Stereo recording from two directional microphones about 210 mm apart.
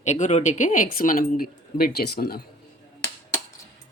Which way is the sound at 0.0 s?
35° left (ahead or behind).